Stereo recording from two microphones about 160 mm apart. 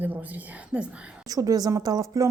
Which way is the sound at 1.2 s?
20° right (ahead or behind).